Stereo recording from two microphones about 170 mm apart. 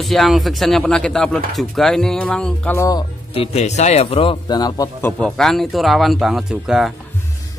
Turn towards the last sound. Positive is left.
turn(degrees=-5)  # may be behind; listen again after turning